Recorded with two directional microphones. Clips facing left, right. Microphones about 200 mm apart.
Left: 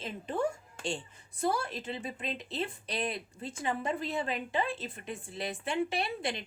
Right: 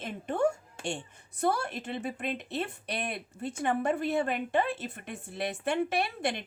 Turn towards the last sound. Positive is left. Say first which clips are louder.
# right 3 dB
turn(degrees=-60)  # may be behind; listen again after turning